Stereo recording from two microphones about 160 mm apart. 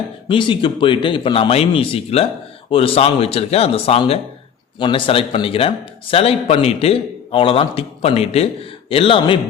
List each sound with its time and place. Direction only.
0.3 s speech: 30° left (ahead or behind)